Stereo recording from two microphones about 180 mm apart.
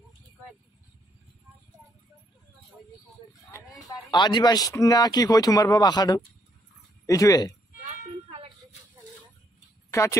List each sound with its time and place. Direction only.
3.5 s speech: 20° left (ahead or behind)
7.8 s music: 35° right (ahead or behind)